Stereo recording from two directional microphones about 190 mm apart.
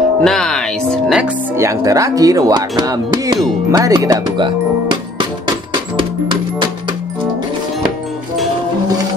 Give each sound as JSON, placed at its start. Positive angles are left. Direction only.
{"t": 0.2, "sound": "music", "side_deg": 5}
{"t": 1.6, "sound": "speech", "side_deg": -15}